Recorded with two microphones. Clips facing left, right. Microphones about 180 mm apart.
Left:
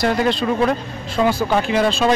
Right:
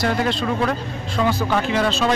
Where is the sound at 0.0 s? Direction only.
15° left (ahead or behind).